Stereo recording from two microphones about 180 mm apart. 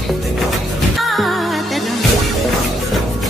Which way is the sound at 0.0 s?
Centre (ahead or behind).